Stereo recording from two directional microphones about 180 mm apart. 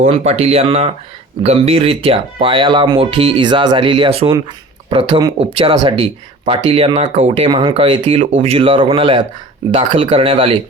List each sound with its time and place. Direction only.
0.0 s speech: 35° right (ahead or behind)